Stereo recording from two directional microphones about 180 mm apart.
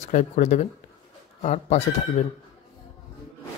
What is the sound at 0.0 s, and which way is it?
Speech, 40° left (ahead or behind).